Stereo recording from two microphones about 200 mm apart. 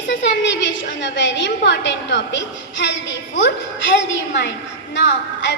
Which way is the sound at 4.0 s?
60° left (ahead or behind).